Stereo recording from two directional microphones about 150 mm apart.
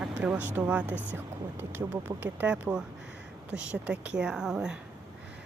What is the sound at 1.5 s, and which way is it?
Speech, 15° right (ahead or behind).